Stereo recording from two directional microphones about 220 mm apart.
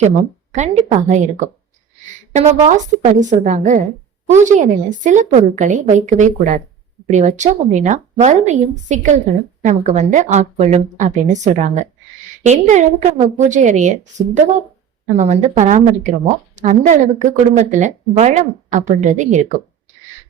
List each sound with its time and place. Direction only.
0.0 s speech: 30° right (ahead or behind)